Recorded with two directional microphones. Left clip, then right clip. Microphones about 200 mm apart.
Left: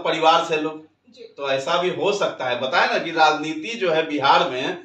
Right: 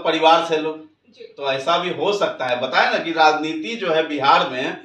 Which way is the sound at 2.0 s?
15° left (ahead or behind).